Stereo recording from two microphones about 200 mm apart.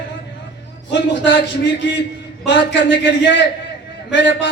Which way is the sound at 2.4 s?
65° left (ahead or behind).